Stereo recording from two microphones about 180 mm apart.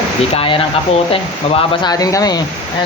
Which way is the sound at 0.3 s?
30° left (ahead or behind).